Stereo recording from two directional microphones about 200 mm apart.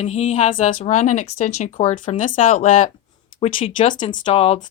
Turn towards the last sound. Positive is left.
turn(degrees=30)  # may be behind; listen again after turning